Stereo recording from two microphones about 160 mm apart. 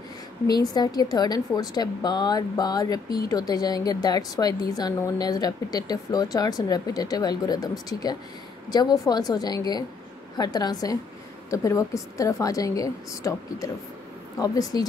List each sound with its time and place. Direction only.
0.5 s a woman's voice: 25° left (ahead or behind)